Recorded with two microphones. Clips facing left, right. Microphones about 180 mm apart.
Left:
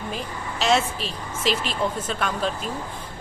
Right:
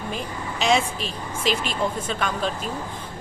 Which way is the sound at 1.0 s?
45° right (ahead or behind).